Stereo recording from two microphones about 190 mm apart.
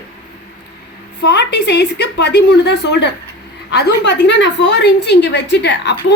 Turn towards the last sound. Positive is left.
turn(degrees=65)  # may be behind; listen again after turning